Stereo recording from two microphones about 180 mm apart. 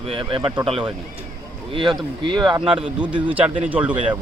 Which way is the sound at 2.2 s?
25° right (ahead or behind).